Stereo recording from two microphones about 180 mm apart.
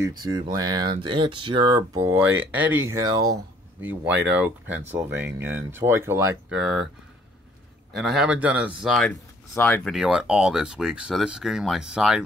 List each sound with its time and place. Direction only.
0.0 s speech: 20° right (ahead or behind)
6.6 s speech: centre (ahead or behind)
7.9 s speech: centre (ahead or behind)
9.5 s speech: 10° left (ahead or behind)